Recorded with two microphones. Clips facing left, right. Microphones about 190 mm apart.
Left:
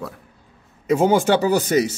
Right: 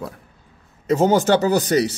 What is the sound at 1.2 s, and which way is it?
Speech, 45° right (ahead or behind).